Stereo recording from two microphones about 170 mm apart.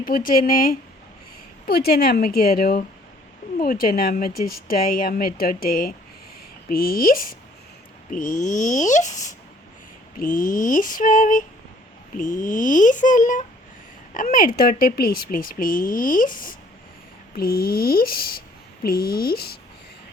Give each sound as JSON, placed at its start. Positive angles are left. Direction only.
{"t": 0.0, "sound": "speech", "side_deg": 55}
{"t": 8.1, "sound": "female singing", "side_deg": 50}
{"t": 14.1, "sound": "speech", "side_deg": 55}